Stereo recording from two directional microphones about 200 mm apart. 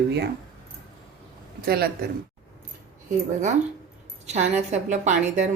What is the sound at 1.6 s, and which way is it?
Speech, 50° right (ahead or behind).